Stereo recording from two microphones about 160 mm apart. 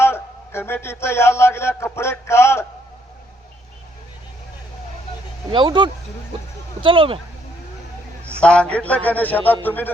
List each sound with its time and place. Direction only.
0.0 s a man's voice: 15° left (ahead or behind)
5.5 s speech: 30° right (ahead or behind)
8.4 s a man's voice: 5° left (ahead or behind)